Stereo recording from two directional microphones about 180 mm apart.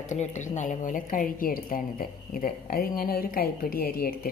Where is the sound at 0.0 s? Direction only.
40° left (ahead or behind).